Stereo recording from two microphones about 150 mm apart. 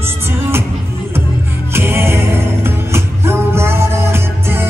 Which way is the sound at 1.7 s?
15° right (ahead or behind).